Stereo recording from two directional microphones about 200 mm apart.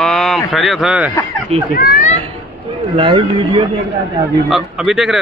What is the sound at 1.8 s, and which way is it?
Speech, 45° left (ahead or behind).